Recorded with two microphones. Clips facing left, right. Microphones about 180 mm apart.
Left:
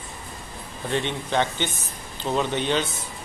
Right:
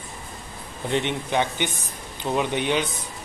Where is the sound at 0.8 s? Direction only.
15° right (ahead or behind).